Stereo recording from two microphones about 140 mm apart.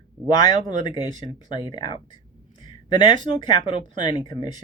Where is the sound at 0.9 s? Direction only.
30° left (ahead or behind).